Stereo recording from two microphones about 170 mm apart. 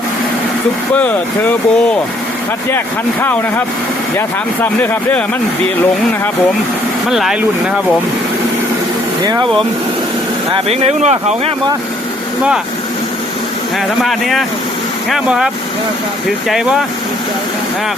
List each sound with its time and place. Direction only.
0.9 s speech: 10° left (ahead or behind)
4.6 s speech: 10° left (ahead or behind)
7.1 s speech: centre (ahead or behind)
10.5 s speech: 40° right (ahead or behind)
14.0 s speech: centre (ahead or behind)
16.5 s speech: centre (ahead or behind)